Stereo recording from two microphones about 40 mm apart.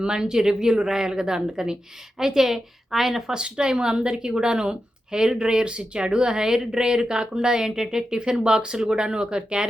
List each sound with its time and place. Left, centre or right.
0.0 s speech: centre
3.3 s speech: right